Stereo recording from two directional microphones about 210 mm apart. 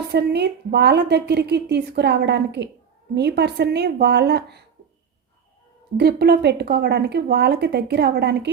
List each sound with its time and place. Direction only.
0.1 s a woman's voice: 50° right (ahead or behind)
6.0 s a woman's voice: 50° right (ahead or behind)